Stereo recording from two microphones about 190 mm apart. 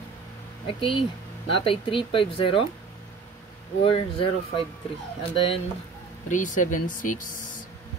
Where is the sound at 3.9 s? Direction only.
30° left (ahead or behind).